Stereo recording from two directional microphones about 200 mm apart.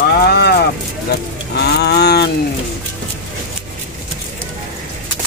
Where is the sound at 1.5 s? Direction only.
55° left (ahead or behind).